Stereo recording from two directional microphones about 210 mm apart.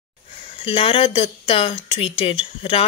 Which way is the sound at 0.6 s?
25° left (ahead or behind).